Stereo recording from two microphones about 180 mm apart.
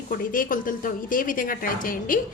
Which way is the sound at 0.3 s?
50° left (ahead or behind).